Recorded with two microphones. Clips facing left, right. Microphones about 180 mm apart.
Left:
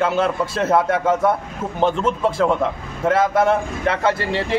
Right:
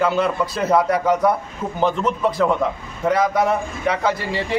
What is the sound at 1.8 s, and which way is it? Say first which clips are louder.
Speech: left 1 dB; 30° left (ahead or behind).